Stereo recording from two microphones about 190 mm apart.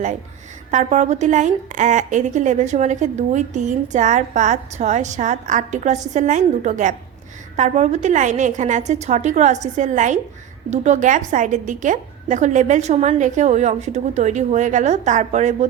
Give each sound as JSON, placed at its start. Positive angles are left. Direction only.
{"t": 0.7, "sound": "a woman's voice", "side_deg": -40}